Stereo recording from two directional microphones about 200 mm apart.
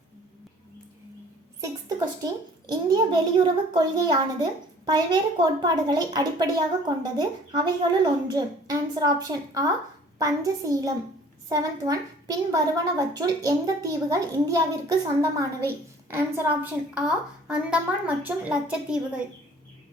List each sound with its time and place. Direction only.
1.6 s a child's voice: 20° right (ahead or behind)